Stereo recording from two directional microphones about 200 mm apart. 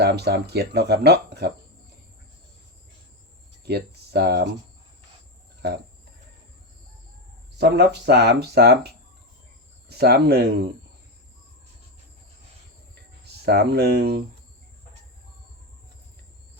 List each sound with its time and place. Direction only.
0.0 s speech: 55° right (ahead or behind)
3.7 s speech: 55° right (ahead or behind)
7.6 s speech: 55° right (ahead or behind)
9.9 s speech: 55° right (ahead or behind)
13.4 s speech: 55° right (ahead or behind)